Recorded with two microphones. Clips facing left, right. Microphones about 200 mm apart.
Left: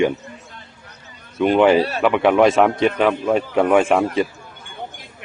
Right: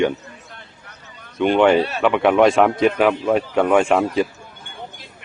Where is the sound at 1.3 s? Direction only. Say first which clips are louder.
Left 1 dB; 5° left (ahead or behind).